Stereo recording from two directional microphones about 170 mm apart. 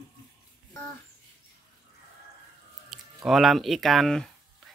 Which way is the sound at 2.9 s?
Centre (ahead or behind).